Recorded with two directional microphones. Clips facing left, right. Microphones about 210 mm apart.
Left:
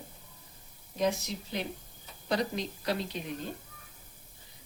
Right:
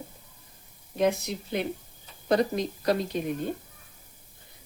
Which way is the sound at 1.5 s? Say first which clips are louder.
Right 8 dB; 55° right (ahead or behind).